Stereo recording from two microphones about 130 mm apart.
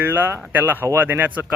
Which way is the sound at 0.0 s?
15° right (ahead or behind).